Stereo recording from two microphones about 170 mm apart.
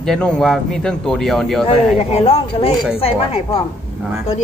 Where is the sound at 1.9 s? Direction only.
35° left (ahead or behind).